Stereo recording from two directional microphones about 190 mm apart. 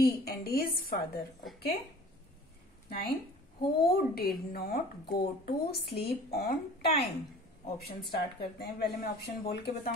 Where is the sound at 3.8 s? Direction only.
55° left (ahead or behind).